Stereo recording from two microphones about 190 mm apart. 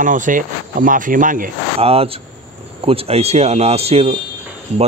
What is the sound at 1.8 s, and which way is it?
Speech, 30° right (ahead or behind).